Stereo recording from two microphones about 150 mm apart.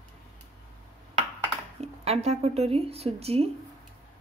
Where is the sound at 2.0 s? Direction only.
45° right (ahead or behind).